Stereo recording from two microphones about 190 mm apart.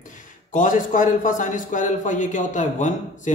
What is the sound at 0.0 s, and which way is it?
A man's voice, 45° left (ahead or behind).